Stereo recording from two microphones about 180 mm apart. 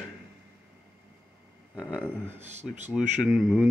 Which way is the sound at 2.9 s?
5° right (ahead or behind).